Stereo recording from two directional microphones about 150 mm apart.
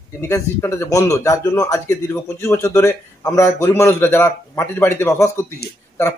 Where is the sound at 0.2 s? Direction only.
15° left (ahead or behind).